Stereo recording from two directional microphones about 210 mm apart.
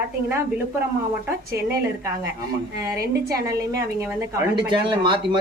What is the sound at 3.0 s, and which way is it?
Speech, 45° right (ahead or behind).